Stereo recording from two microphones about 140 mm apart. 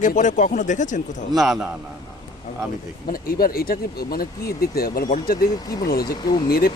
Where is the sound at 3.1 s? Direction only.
90° left.